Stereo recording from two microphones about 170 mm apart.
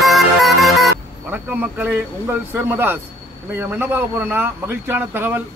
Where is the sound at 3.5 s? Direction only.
10° right (ahead or behind).